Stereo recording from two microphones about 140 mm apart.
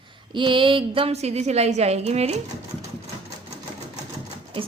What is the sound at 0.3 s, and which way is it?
A woman's voice, 35° right (ahead or behind).